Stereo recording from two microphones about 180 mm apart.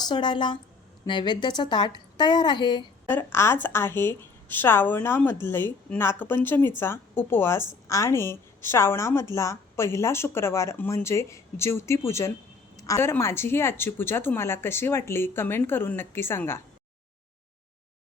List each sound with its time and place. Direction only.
0.0 s a woman's voice: 25° left (ahead or behind)
3.1 s a woman's voice: 10° left (ahead or behind)